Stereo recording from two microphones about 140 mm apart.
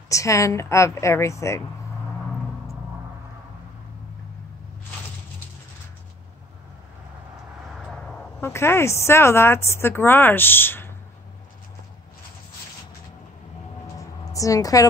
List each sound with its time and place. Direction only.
0.1 s a woman's voice: 20° left (ahead or behind)
7.8 s vehicle: 5° left (ahead or behind)
8.4 s speech: 15° left (ahead or behind)
14.3 s a woman's voice: 25° left (ahead or behind)